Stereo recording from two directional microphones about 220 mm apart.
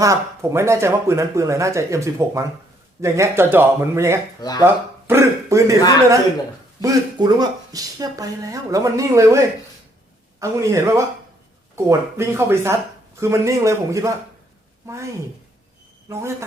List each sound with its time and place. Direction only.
0.0 s speech: 15° right (ahead or behind)
4.4 s speech: 15° left (ahead or behind)
4.6 s speech: 10° right (ahead or behind)
6.8 s speech: 20° right (ahead or behind)
10.4 s speech: 15° right (ahead or behind)